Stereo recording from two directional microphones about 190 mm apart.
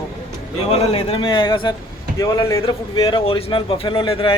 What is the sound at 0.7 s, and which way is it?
A man's voice, 30° left (ahead or behind).